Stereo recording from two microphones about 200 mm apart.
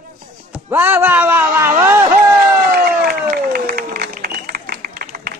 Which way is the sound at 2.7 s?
50° right (ahead or behind).